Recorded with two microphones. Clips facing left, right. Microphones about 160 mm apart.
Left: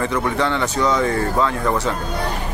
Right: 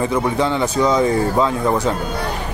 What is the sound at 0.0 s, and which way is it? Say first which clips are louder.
Speech: right 2 dB; 15° right (ahead or behind).